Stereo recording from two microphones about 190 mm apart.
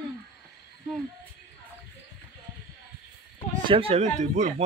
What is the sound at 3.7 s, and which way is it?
Speech, 30° right (ahead or behind).